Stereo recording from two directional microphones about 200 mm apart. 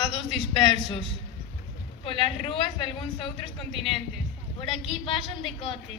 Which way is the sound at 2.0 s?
25° left (ahead or behind).